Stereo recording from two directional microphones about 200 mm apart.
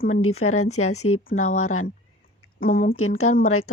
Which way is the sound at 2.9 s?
90° left.